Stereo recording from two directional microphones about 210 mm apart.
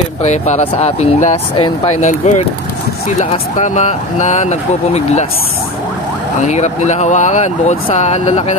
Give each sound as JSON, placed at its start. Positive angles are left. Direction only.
{"t": 0.2, "sound": "speech", "side_deg": 35}
{"t": 6.4, "sound": "speech", "side_deg": 35}